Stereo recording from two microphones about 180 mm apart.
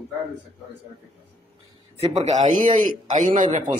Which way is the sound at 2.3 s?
45° right (ahead or behind).